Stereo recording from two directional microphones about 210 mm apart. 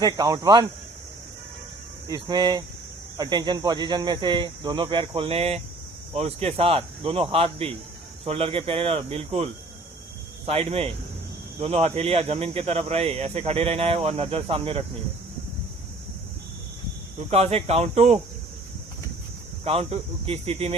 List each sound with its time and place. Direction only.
0.0 s speech: 20° right (ahead or behind)
2.0 s speech: 20° right (ahead or behind)
17.3 s speech: 30° right (ahead or behind)
19.6 s speech: 30° right (ahead or behind)